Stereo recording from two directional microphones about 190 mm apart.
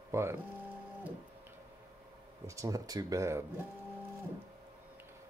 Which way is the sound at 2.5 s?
15° right (ahead or behind).